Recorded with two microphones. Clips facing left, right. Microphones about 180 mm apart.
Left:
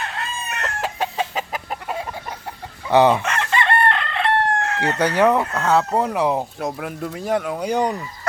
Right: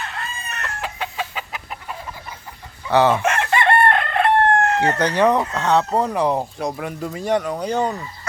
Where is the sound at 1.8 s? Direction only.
70° left (ahead or behind).